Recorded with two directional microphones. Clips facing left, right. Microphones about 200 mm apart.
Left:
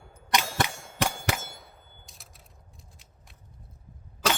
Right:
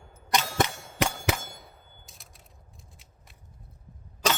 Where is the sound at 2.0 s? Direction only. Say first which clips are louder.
Even; centre (ahead or behind).